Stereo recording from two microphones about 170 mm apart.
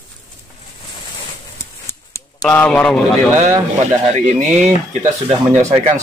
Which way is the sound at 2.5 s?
5° left (ahead or behind).